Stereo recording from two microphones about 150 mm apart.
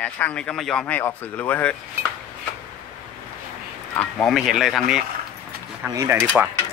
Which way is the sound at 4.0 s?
5° left (ahead or behind).